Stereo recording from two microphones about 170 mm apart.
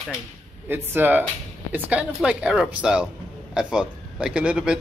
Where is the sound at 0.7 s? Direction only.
10° right (ahead or behind).